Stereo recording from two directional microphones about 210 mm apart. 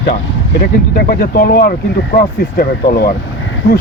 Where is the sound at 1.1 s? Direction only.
45° left (ahead or behind).